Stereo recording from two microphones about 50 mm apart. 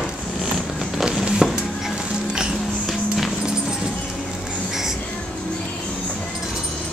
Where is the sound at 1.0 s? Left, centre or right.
Centre.